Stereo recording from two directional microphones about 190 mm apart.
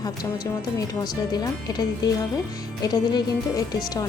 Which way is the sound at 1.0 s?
20° left (ahead or behind).